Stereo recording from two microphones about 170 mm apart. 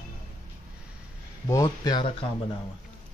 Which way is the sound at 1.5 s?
20° left (ahead or behind).